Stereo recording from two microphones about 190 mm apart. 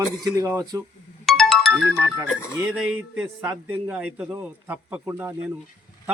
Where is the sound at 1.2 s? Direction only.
Centre (ahead or behind).